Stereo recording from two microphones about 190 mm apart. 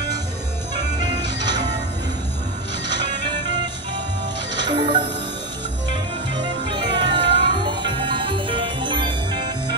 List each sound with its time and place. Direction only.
4.6 s music: 25° right (ahead or behind)
6.7 s music: 25° right (ahead or behind)